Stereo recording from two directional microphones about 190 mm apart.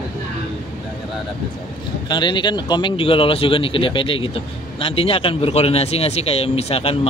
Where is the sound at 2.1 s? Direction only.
25° left (ahead or behind).